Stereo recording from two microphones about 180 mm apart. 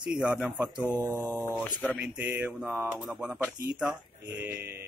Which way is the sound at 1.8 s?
Centre (ahead or behind).